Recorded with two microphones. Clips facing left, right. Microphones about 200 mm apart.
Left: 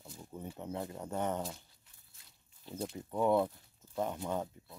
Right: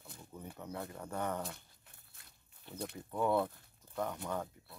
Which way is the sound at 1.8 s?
60° right (ahead or behind).